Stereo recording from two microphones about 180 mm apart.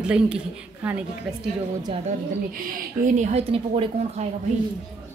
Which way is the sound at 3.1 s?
40° right (ahead or behind).